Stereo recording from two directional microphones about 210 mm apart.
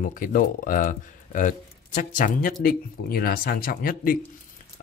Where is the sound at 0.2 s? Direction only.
40° left (ahead or behind).